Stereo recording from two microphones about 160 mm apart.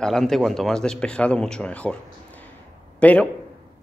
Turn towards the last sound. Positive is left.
turn(degrees=10)  # may be behind; listen again after turning